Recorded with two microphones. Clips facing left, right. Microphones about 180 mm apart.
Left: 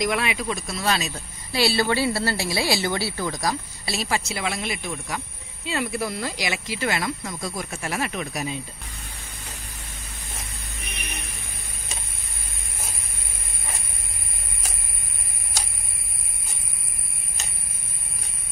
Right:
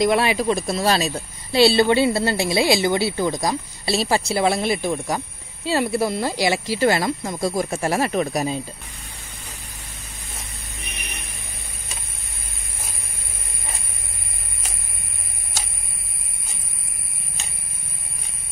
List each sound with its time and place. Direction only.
0.0 s speech: 30° right (ahead or behind)